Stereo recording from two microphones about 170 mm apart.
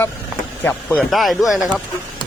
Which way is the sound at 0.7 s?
Centre (ahead or behind).